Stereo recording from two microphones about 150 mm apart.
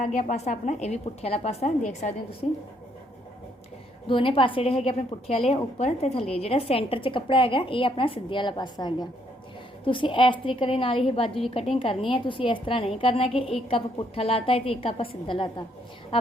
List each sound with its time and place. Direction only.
0.0 s a woman's voice: 55° left (ahead or behind)
4.0 s a woman's voice: 35° left (ahead or behind)